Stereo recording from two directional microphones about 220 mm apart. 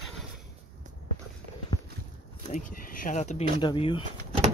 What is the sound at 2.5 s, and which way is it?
Speech, 40° left (ahead or behind).